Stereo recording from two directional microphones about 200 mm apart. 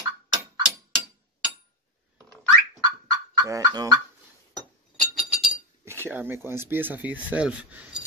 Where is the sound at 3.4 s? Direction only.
20° right (ahead or behind).